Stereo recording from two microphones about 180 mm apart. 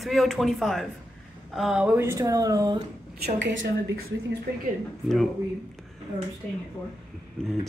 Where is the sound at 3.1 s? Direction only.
65° right (ahead or behind); by 3.7 s 85° right.